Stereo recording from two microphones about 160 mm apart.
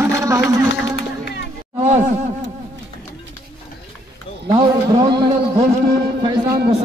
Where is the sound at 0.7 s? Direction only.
90° left.